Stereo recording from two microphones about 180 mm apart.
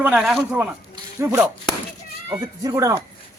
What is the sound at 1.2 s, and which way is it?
Speech, 15° right (ahead or behind).